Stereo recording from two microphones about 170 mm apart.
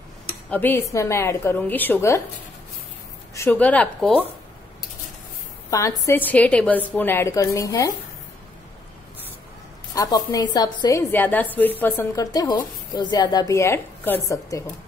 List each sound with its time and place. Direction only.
0.5 s a woman's voice: 10° left (ahead or behind)
3.3 s a woman's voice: 10° left (ahead or behind)
5.7 s a woman's voice: 20° left (ahead or behind)
9.9 s a woman's voice: 20° left (ahead or behind)